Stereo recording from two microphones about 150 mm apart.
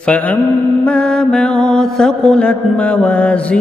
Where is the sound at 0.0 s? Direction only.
10° left (ahead or behind).